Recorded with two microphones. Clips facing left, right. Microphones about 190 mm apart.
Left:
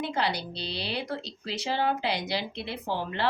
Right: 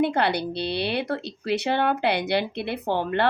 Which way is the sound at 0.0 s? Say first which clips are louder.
Right 7 dB; 60° right (ahead or behind).